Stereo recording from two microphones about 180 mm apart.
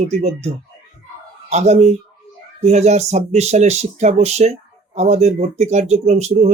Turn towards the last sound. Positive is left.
turn(degrees=-40)  # may be behind; listen again after turning